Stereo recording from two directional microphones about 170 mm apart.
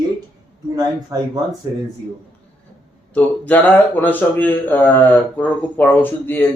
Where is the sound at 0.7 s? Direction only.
20° right (ahead or behind).